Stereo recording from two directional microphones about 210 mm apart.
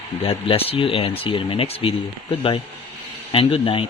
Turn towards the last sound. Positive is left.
turn(degrees=25)  # may be behind; listen again after turning